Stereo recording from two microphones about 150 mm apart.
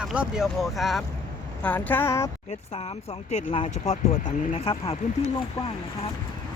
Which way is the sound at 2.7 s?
45° left (ahead or behind).